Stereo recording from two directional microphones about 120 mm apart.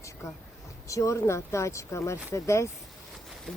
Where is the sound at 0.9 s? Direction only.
25° left (ahead or behind).